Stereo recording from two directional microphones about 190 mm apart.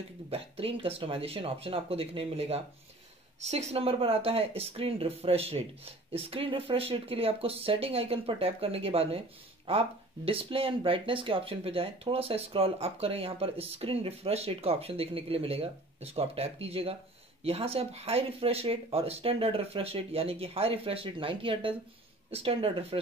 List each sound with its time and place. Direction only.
0.3 s speech: 30° right (ahead or behind)